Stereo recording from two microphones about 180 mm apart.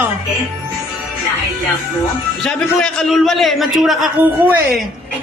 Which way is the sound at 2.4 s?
Centre (ahead or behind).